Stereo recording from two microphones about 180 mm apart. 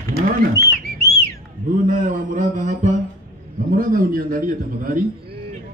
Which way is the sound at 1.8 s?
45° right (ahead or behind).